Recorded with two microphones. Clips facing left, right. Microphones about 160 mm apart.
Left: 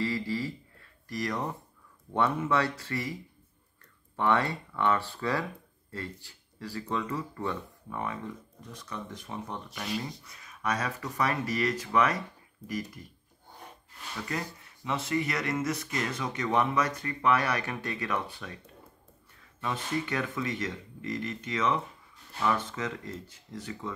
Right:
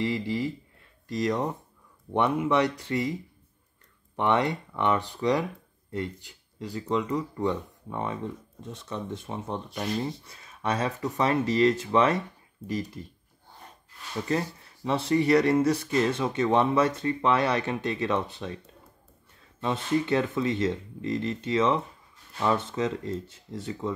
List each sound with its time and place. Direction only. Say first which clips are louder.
0.0 s speech: right 3 dB; 20° right (ahead or behind)
4.2 s speech: right 3 dB; 20° right (ahead or behind)
14.2 s speech: right 8 dB; 30° right (ahead or behind)
19.6 s speech: right 6 dB; 25° right (ahead or behind)